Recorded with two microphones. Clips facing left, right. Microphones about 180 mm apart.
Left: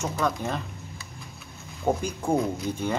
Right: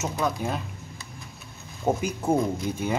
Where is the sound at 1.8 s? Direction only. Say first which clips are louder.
Right 1 dB; 5° right (ahead or behind).